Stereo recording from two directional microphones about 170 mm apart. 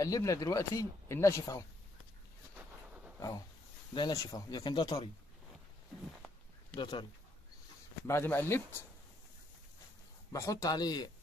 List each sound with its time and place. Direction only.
0.0 s speech: 20° left (ahead or behind)
3.2 s a sound: 20° left (ahead or behind)
3.9 s speech: 25° left (ahead or behind)
6.7 s speech: 30° left (ahead or behind)
8.1 s speech: 15° left (ahead or behind)
10.3 s speech: 20° left (ahead or behind)